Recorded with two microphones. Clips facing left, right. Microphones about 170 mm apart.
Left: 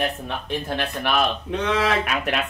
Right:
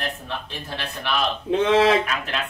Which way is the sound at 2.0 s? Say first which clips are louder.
Left 4 dB; 65° left (ahead or behind).